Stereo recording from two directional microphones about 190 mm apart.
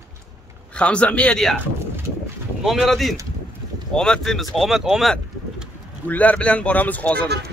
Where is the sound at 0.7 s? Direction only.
5° left (ahead or behind).